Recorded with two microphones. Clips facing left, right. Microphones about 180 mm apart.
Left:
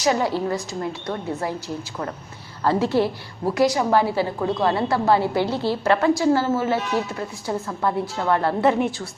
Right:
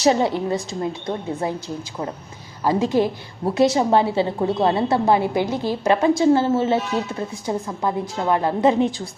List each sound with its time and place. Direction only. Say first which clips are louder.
0.0 s a woman's voice: right 3 dB; 25° right (ahead or behind)
2.6 s a woman's voice: right 1 dB; 15° right (ahead or behind)